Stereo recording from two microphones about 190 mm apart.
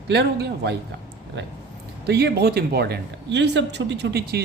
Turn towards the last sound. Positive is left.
turn(degrees=-55)  # may be behind; listen again after turning